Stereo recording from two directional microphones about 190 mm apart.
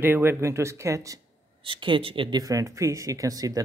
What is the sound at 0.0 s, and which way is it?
Speech, 10° right (ahead or behind).